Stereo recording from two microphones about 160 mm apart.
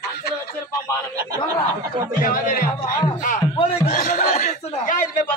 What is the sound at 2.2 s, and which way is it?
Speech, 60° left (ahead or behind).